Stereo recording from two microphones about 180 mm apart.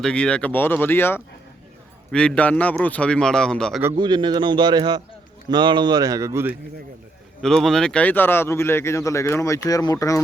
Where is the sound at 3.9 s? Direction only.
25° right (ahead or behind).